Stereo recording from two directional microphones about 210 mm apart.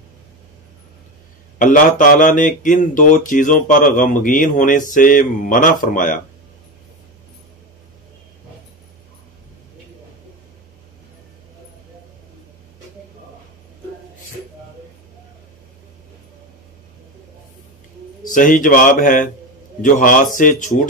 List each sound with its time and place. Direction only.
1.6 s speech: 40° left (ahead or behind)
18.3 s speech: 40° left (ahead or behind)